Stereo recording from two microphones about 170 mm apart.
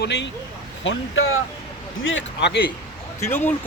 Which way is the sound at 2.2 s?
75° left (ahead or behind).